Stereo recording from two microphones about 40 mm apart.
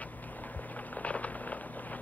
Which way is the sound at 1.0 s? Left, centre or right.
Left.